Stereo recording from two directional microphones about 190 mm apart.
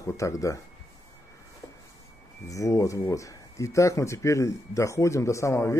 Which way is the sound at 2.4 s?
15° left (ahead or behind).